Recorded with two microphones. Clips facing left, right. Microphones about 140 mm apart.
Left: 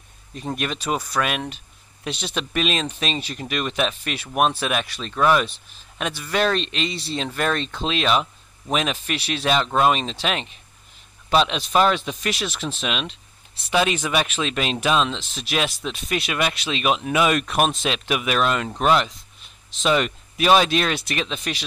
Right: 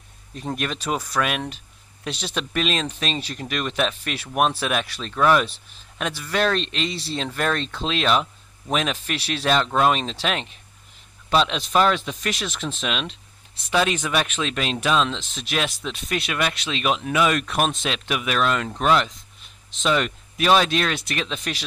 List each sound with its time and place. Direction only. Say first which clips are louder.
0.3 s speech: even; centre (ahead or behind)